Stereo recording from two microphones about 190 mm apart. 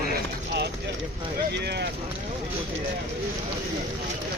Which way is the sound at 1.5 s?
60° right (ahead or behind).